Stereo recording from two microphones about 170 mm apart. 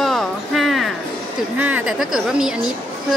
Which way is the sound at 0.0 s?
Centre (ahead or behind).